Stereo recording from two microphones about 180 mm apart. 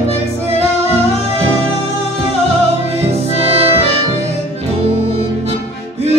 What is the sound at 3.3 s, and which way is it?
Music, 35° right (ahead or behind).